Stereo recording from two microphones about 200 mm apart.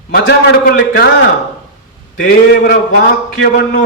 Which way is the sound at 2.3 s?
50° left (ahead or behind).